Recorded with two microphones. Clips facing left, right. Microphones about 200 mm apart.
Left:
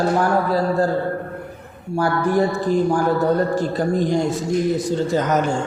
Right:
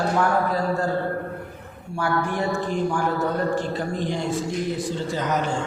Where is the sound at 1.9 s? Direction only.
40° left (ahead or behind).